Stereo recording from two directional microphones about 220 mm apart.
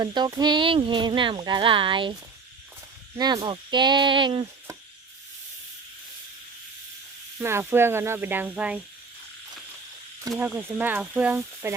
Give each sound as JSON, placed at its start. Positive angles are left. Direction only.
{"t": 0.0, "sound": "speech", "side_deg": -20}
{"t": 3.2, "sound": "speech", "side_deg": -20}
{"t": 7.3, "sound": "speech", "side_deg": -10}
{"t": 10.3, "sound": "speech", "side_deg": -5}